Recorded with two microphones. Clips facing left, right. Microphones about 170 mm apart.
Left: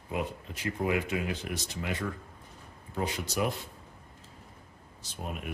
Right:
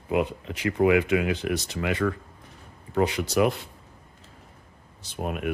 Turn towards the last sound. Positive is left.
turn(degrees=-65)  # may be behind; listen again after turning